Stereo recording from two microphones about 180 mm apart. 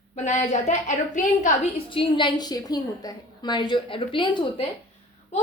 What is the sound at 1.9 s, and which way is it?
A woman's voice, 25° left (ahead or behind).